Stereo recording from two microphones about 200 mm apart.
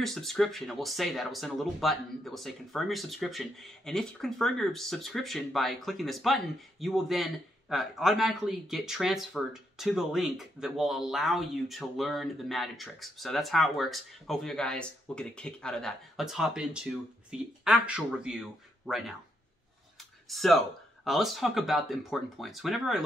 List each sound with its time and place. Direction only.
0.0 s speech: centre (ahead or behind)
20.2 s speech: centre (ahead or behind)